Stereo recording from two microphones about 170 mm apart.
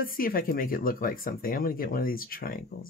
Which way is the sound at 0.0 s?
55° left (ahead or behind).